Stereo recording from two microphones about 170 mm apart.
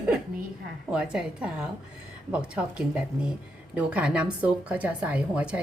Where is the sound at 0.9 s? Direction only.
5° right (ahead or behind).